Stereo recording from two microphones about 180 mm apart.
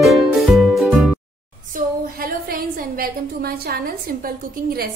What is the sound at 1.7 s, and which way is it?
A woman's voice, 55° right (ahead or behind).